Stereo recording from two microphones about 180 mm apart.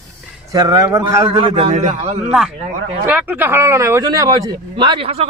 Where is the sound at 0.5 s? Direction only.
20° right (ahead or behind); by 2.2 s 40° right (ahead or behind).